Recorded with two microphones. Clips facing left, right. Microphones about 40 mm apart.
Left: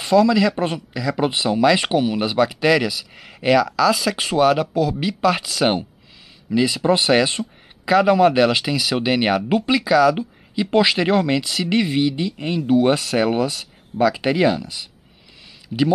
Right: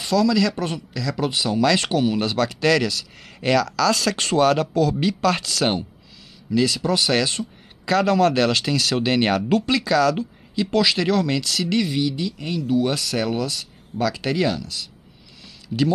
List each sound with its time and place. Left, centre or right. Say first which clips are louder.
0.0 s speech: left 4 dB; left
15.7 s speech: left 2 dB; centre